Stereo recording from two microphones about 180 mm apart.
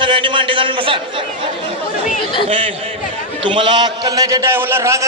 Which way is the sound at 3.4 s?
25° right (ahead or behind).